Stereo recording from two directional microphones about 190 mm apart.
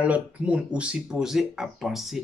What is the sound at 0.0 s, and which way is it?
Speech, 5° right (ahead or behind).